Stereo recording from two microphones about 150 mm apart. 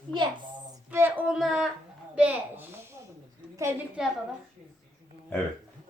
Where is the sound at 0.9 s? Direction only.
15° right (ahead or behind).